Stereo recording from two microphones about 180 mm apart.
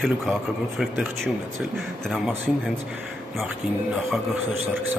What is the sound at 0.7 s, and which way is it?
A man's voice, centre (ahead or behind).